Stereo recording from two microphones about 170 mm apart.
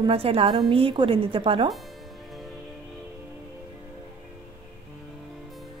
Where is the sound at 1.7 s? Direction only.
Centre (ahead or behind).